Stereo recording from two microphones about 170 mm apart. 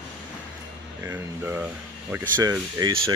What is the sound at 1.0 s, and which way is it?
Speech, 10° right (ahead or behind).